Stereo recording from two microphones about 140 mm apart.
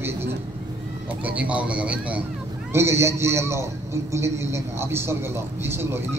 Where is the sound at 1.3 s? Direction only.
10° right (ahead or behind).